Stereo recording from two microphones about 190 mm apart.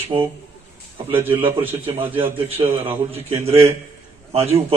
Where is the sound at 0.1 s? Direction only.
25° right (ahead or behind).